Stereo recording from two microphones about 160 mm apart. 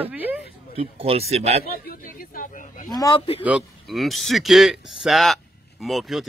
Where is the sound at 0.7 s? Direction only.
35° right (ahead or behind).